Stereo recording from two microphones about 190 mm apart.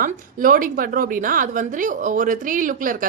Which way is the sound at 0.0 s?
45° right (ahead or behind).